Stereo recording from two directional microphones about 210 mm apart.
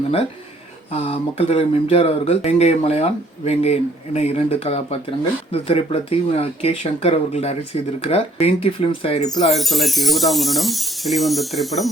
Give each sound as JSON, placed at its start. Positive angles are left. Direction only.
{"t": 0.9, "sound": "speech", "side_deg": 30}
{"t": 9.6, "sound": "speech", "side_deg": 0}